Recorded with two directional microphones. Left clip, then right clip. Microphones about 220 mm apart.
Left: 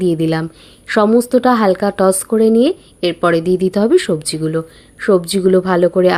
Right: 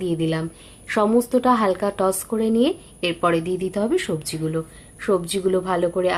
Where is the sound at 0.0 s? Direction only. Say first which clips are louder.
Left 8 dB; 30° left (ahead or behind).